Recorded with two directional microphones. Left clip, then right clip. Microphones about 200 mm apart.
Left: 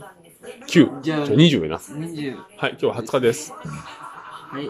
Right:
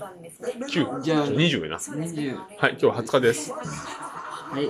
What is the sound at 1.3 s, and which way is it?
Speech, 20° left (ahead or behind).